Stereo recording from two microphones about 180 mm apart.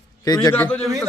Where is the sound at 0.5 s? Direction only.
10° left (ahead or behind).